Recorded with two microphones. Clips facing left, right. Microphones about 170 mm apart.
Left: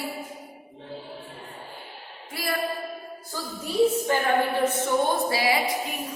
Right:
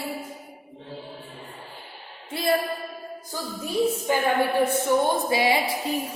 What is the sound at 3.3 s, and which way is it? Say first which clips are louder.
Music: left 2 dB; 15° right (ahead or behind).